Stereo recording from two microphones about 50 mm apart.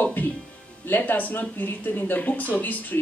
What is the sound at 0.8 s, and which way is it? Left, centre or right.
A woman's voice, left.